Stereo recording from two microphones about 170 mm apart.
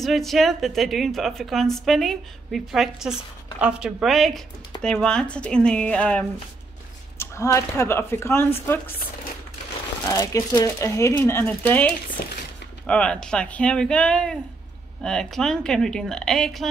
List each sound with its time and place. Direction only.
0.0 s a woman's voice: centre (ahead or behind)
10.1 s a woman's voice: 20° left (ahead or behind); by 16.6 s centre (ahead or behind)